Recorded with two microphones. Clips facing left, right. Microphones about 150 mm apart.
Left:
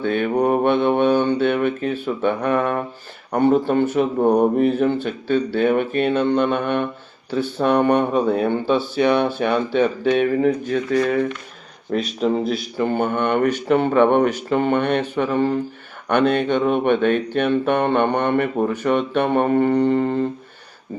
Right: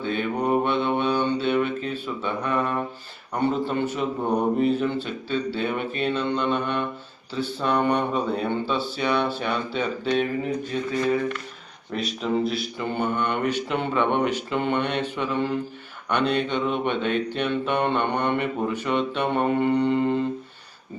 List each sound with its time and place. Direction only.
0.0 s speech: 55° left (ahead or behind)
11.9 s speech: 40° left (ahead or behind)